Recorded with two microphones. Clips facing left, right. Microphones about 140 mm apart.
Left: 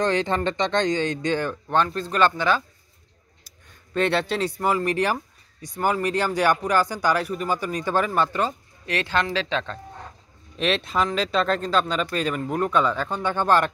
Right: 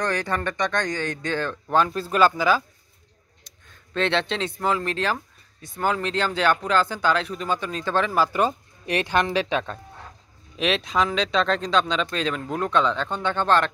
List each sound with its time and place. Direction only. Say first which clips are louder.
0.0 s speech: left 3 dB; 20° left (ahead or behind)
1.9 s speech: right 1 dB; 5° right (ahead or behind)
3.4 s speech: even; 10° left (ahead or behind)
8.3 s speech: right 3 dB; 15° right (ahead or behind)
10.5 s speech: even; centre (ahead or behind)